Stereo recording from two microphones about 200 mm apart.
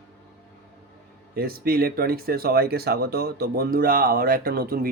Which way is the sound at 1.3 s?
50° right (ahead or behind).